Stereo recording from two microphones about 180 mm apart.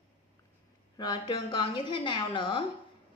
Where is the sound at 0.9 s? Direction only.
25° left (ahead or behind).